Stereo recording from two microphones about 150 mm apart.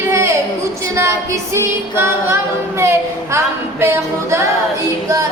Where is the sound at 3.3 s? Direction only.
15° right (ahead or behind).